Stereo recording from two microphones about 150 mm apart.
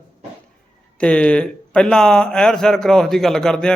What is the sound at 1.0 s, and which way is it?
A man's voice, 5° left (ahead or behind).